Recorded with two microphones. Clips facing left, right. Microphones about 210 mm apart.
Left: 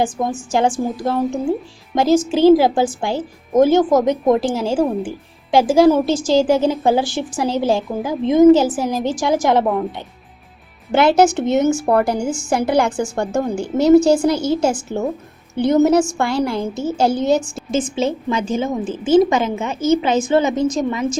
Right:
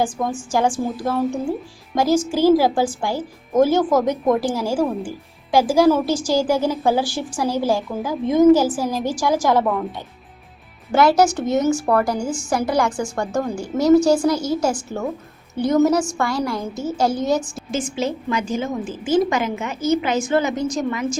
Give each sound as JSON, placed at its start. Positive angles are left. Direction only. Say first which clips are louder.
{"t": 0.0, "sound": "speech", "louder": "left 2 dB", "side_deg": 20}
{"t": 10.9, "sound": "speech", "louder": "left 2 dB", "side_deg": 25}